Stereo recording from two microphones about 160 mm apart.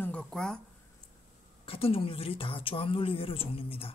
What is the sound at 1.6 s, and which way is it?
Speech, 35° left (ahead or behind).